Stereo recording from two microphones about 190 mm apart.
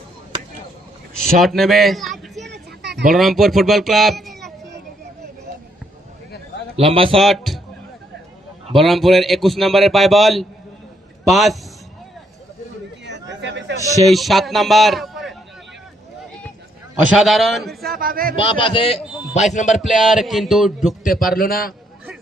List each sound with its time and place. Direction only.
1.4 s a man's voice: centre (ahead or behind)
2.5 s a sound: 60° right (ahead or behind)
3.1 s a man's voice: centre (ahead or behind)
6.7 s a man's voice: 30° right (ahead or behind)
7.2 s a man's voice: centre (ahead or behind)
8.8 s a man's voice: centre (ahead or behind)
13.1 s chatter: 65° right (ahead or behind)
14.1 s a man's voice: centre (ahead or behind)
17.1 s a man's voice: centre (ahead or behind)
17.8 s speech: 50° right (ahead or behind)
18.3 s a man's voice: 25° left (ahead or behind)
19.7 s a man's voice: centre (ahead or behind)
21.0 s a man's voice: 50° left (ahead or behind)